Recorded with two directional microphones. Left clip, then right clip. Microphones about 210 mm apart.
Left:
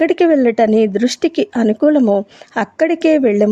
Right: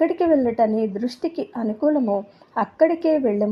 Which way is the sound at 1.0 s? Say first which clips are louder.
Left 10 dB; 60° left (ahead or behind).